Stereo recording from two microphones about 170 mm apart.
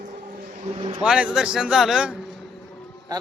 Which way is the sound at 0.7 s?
30° right (ahead or behind).